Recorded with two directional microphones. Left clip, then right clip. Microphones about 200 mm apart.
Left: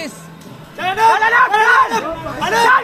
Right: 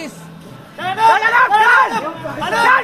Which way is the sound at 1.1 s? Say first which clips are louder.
Even; 35° right (ahead or behind).